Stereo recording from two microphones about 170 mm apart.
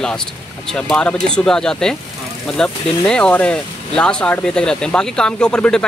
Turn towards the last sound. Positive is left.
turn(degrees=5)  # may be behind; listen again after turning